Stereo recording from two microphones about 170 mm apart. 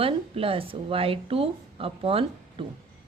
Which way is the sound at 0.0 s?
35° right (ahead or behind).